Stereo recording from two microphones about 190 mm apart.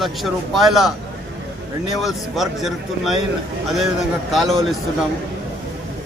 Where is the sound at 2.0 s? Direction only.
Centre (ahead or behind).